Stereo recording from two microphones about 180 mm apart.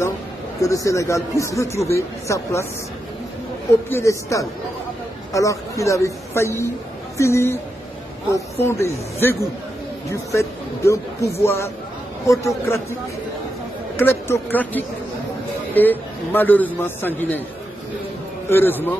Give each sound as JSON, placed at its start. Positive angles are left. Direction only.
{"t": 0.6, "sound": "a man's voice", "side_deg": 15}
{"t": 3.9, "sound": "a man's voice", "side_deg": 15}
{"t": 13.9, "sound": "a man's voice", "side_deg": 15}
{"t": 18.5, "sound": "a man's voice", "side_deg": 10}